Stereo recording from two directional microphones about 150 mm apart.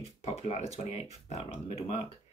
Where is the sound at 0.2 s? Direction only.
45° left (ahead or behind).